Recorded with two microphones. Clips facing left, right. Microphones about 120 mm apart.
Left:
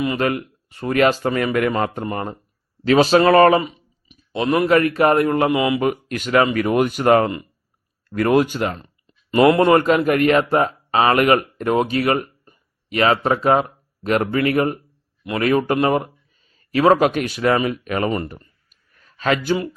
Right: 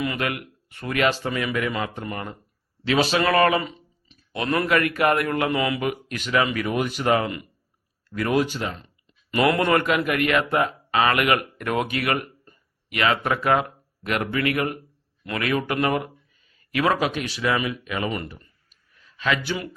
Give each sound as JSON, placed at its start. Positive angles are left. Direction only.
{"t": 0.0, "sound": "speech", "side_deg": 25}
{"t": 0.9, "sound": "speech", "side_deg": 45}
{"t": 3.6, "sound": "speech", "side_deg": 15}
{"t": 5.8, "sound": "speech", "side_deg": 45}
{"t": 9.3, "sound": "speech", "side_deg": 30}
{"t": 12.1, "sound": "a sound", "side_deg": 20}
{"t": 12.9, "sound": "a man's voice", "side_deg": 35}
{"t": 15.4, "sound": "speech", "side_deg": 40}
{"t": 17.0, "sound": "speech", "side_deg": 50}
{"t": 18.3, "sound": "a sound", "side_deg": 50}